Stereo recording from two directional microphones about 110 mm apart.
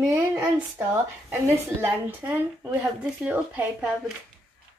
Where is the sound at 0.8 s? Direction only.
20° right (ahead or behind).